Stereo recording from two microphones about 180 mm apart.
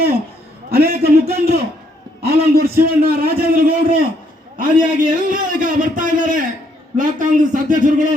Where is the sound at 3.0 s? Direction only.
55° right (ahead or behind).